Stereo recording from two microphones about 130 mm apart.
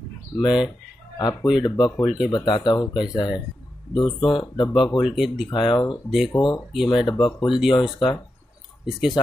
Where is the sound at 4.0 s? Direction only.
40° left (ahead or behind).